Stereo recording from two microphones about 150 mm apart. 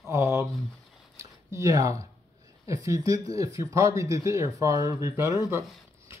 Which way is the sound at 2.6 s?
20° right (ahead or behind).